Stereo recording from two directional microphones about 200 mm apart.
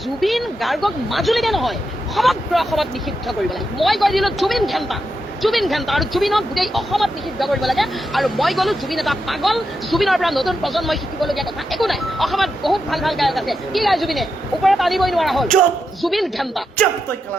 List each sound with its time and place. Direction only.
0.2 s speech: centre (ahead or behind)